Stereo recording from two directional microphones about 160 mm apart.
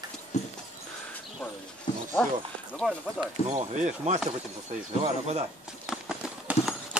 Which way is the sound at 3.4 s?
45° right (ahead or behind).